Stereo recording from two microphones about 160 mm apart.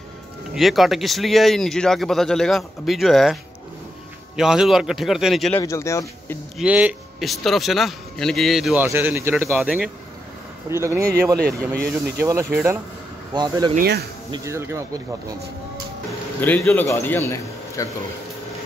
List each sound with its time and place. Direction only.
0.6 s speech: centre (ahead or behind)
4.4 s speech: 5° right (ahead or behind)
5.6 s speech: 20° left (ahead or behind)
6.6 s speech: 10° right (ahead or behind)
8.7 s speech: 10° right (ahead or behind)
9.6 s speech: 5° right (ahead or behind)
10.7 s speech: 15° right (ahead or behind)
11.3 s speech: 75° right (ahead or behind)
11.9 s speech: 15° right (ahead or behind)
13.3 s speech: 25° right (ahead or behind)
13.7 s speech: 85° right
14.3 s speech: 20° right (ahead or behind)
16.1 s a man's voice: 10° left (ahead or behind)